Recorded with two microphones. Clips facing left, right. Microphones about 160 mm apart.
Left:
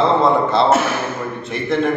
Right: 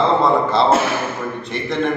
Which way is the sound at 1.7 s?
Centre (ahead or behind).